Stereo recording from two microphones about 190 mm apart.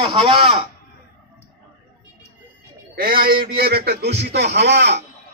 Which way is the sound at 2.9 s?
50° right (ahead or behind).